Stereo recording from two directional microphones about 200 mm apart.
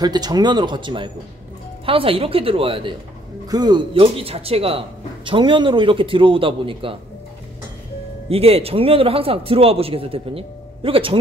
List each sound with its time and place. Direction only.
0.0 s speech: 20° right (ahead or behind)
8.3 s speech: 30° right (ahead or behind)